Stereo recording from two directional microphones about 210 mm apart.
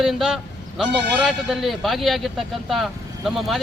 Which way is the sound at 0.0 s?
Centre (ahead or behind).